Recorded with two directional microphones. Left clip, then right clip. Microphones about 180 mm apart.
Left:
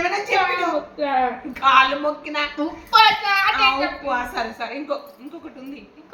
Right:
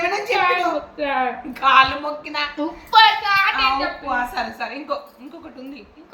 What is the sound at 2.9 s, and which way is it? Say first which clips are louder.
Speech: right 1 dB; 10° left (ahead or behind).